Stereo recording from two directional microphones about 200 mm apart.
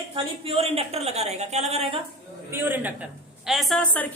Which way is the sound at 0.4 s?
30° right (ahead or behind).